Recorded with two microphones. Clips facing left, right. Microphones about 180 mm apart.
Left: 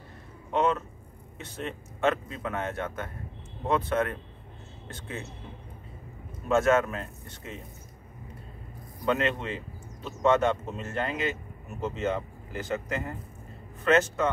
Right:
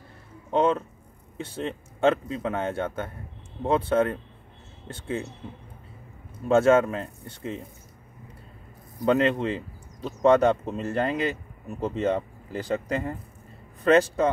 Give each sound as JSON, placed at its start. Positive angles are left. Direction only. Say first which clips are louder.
{"t": 0.5, "sound": "speech", "louder": "right 3 dB", "side_deg": -30}
{"t": 4.8, "sound": "a sound", "louder": "right 8 dB", "side_deg": -30}
{"t": 6.5, "sound": "speech", "louder": "right 4 dB", "side_deg": -30}
{"t": 9.0, "sound": "speech", "louder": "right 6 dB", "side_deg": -35}